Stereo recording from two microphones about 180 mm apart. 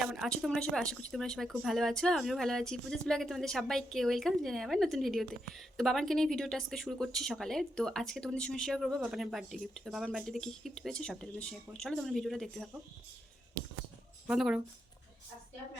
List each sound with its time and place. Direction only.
0.0 s speech: centre (ahead or behind)
14.3 s speech: 5° right (ahead or behind)